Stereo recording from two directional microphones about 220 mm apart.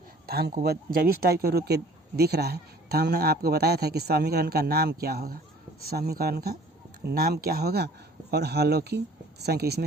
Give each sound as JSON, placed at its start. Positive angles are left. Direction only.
{"t": 0.3, "sound": "speech", "side_deg": -45}